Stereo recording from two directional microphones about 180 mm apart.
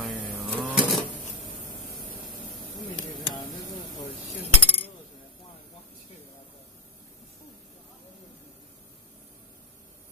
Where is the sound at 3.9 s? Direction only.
20° left (ahead or behind).